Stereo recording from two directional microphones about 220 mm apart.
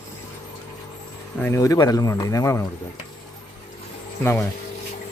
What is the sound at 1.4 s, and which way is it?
Speech, 10° left (ahead or behind).